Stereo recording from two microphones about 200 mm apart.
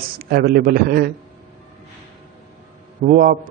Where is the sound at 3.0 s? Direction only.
45° right (ahead or behind).